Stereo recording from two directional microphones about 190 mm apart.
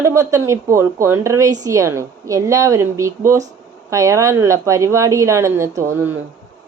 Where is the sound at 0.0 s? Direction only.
15° right (ahead or behind).